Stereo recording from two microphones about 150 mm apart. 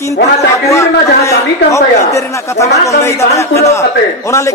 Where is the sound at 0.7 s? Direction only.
20° left (ahead or behind).